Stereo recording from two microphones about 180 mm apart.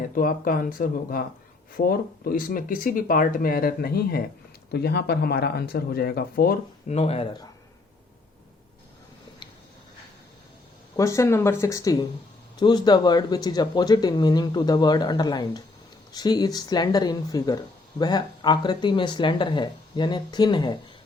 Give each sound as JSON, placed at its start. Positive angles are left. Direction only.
{"t": 0.1, "sound": "speech", "side_deg": 50}
{"t": 6.8, "sound": "speech", "side_deg": 35}
{"t": 10.9, "sound": "speech", "side_deg": 15}